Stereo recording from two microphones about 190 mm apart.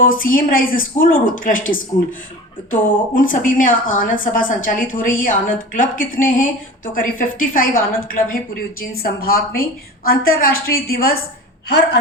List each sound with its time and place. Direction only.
0.0 s speech: 45° left (ahead or behind)
2.8 s speech: 45° left (ahead or behind)